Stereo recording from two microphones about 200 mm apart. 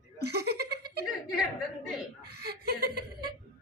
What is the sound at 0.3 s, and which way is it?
Giggle, 50° right (ahead or behind).